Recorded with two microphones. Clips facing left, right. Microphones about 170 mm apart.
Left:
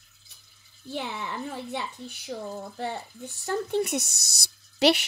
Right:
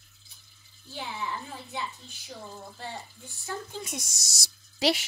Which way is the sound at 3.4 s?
70° left (ahead or behind).